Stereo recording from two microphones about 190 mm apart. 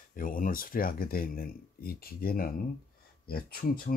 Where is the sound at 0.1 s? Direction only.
45° left (ahead or behind).